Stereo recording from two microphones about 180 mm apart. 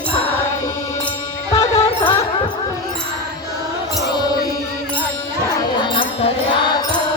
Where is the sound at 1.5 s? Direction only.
20° left (ahead or behind).